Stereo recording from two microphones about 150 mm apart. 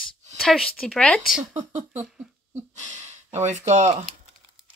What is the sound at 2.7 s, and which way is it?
Speech, 50° right (ahead or behind).